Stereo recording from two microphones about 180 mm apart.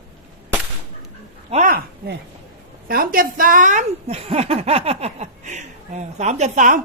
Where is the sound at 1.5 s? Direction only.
45° right (ahead or behind).